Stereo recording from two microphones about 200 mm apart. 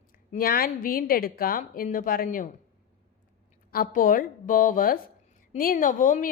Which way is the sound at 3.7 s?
45° left (ahead or behind).